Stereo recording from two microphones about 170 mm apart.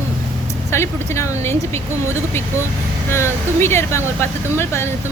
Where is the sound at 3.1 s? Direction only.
15° left (ahead or behind).